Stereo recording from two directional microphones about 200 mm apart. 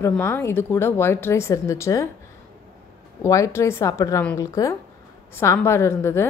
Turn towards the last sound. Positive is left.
turn(degrees=10)  # may be behind; listen again after turning